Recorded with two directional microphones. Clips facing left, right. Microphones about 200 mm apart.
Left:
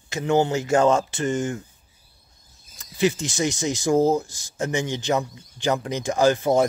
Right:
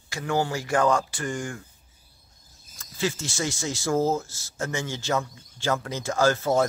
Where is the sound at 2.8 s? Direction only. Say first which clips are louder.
Left 6 dB; 20° left (ahead or behind).